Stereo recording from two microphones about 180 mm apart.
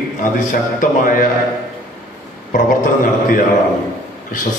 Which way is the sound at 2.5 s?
50° left (ahead or behind).